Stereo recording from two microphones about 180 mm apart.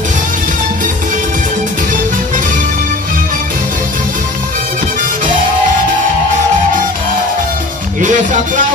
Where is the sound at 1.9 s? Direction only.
45° right (ahead or behind).